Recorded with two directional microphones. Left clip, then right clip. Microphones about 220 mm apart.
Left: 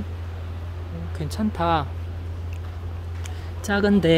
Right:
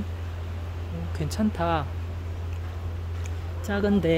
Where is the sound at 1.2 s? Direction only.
Centre (ahead or behind).